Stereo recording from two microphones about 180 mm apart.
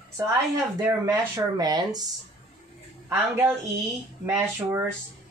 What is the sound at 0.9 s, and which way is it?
Speech, 20° right (ahead or behind).